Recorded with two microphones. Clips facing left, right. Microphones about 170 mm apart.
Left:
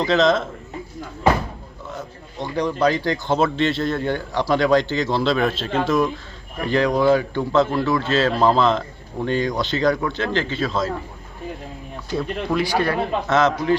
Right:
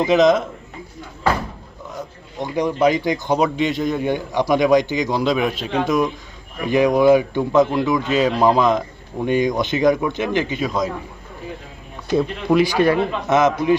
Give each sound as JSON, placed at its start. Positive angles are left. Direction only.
{"t": 0.0, "sound": "speech", "side_deg": -15}
{"t": 2.4, "sound": "speech", "side_deg": -20}
{"t": 12.1, "sound": "speech", "side_deg": -15}